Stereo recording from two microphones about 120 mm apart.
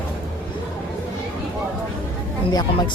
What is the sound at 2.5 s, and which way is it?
Speech, 40° left (ahead or behind).